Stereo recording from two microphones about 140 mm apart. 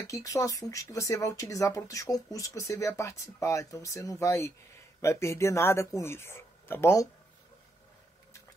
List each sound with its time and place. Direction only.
0.0 s speech: 25° left (ahead or behind)